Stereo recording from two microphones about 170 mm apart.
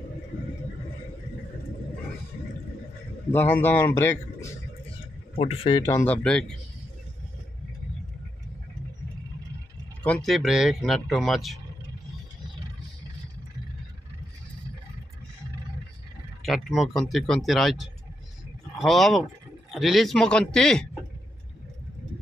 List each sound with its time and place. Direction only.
3.3 s a man's voice: 10° left (ahead or behind)
5.3 s speech: 35° left (ahead or behind)
5.9 s a man's voice: 10° left (ahead or behind)
10.0 s speech: 5° left (ahead or behind)
16.4 s speech: centre (ahead or behind)